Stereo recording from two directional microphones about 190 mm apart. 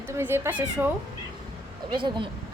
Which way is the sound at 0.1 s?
10° right (ahead or behind).